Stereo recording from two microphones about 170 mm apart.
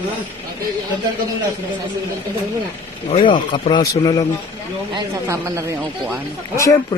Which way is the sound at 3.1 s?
30° left (ahead or behind).